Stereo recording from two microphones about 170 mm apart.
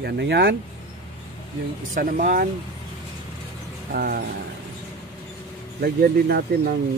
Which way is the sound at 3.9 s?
65° right (ahead or behind).